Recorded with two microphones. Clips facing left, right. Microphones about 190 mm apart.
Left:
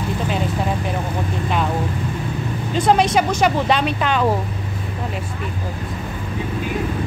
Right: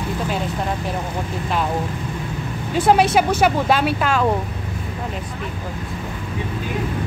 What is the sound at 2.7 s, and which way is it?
Speech, 5° right (ahead or behind).